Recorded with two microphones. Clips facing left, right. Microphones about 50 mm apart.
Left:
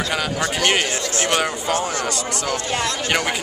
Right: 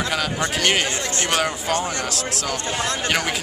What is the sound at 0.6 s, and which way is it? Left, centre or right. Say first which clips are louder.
Speech: left 1 dB; centre.